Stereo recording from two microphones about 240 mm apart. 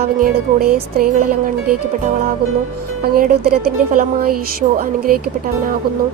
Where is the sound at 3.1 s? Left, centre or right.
Right.